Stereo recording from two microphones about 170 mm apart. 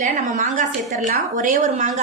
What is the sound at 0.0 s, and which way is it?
A woman's voice, 45° right (ahead or behind).